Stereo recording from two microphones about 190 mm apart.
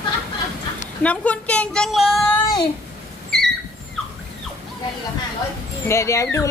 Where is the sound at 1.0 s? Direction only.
5° left (ahead or behind).